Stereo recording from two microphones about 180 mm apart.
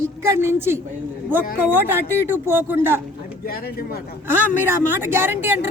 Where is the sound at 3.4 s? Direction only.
60° left (ahead or behind).